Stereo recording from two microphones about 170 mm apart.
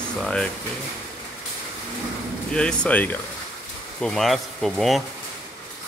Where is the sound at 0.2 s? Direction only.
5° left (ahead or behind).